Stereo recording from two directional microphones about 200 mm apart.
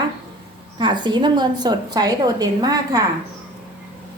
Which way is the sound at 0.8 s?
20° right (ahead or behind).